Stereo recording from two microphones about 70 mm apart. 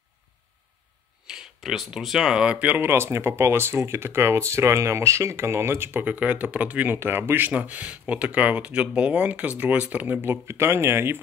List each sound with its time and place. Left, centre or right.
1.2 s speech: centre
2.8 s speech: right
6.0 s speech: right
7.0 s speech: right